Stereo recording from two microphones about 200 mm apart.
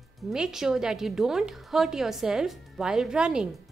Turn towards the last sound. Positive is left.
turn(degrees=-5)  # may be behind; listen again after turning